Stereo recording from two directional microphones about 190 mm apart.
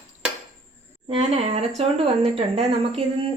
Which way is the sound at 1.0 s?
35° right (ahead or behind).